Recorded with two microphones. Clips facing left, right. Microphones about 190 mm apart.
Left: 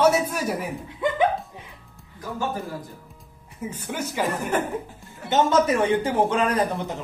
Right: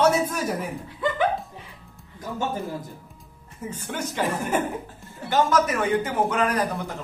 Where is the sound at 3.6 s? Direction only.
10° left (ahead or behind).